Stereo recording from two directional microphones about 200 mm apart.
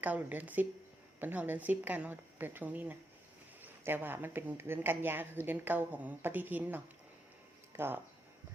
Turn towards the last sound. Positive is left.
turn(degrees=-10)  # may be behind; listen again after turning